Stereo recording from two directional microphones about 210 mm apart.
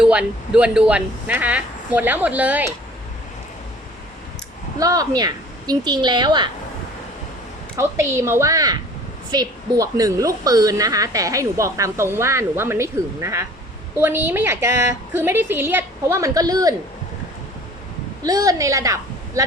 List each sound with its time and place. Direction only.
0.0 s a woman's voice: 5° right (ahead or behind)
4.8 s a woman's voice: 15° right (ahead or behind)
7.8 s a woman's voice: 10° right (ahead or behind)
18.2 s a woman's voice: 15° right (ahead or behind)